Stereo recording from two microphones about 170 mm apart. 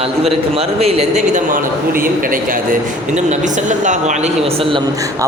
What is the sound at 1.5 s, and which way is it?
A man's voice, 55° right (ahead or behind).